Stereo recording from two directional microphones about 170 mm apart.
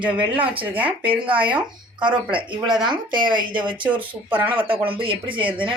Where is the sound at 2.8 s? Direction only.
25° right (ahead or behind).